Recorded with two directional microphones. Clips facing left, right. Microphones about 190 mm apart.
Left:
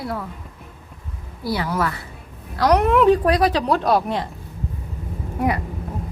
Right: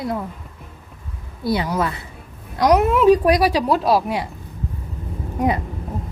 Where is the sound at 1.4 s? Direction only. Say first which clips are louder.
Right 2 dB; 20° right (ahead or behind).